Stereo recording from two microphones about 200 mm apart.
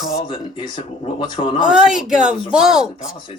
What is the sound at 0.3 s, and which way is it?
A man's voice, 25° left (ahead or behind).